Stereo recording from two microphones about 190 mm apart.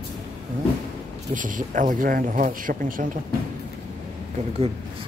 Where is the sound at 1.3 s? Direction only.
45° right (ahead or behind).